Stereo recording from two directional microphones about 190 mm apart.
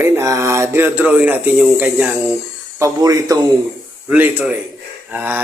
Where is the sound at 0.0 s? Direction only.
15° right (ahead or behind).